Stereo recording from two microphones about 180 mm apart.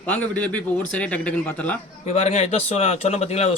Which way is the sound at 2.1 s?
35° left (ahead or behind).